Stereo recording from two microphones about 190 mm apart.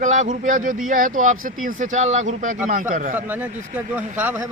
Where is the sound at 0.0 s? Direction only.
40° right (ahead or behind).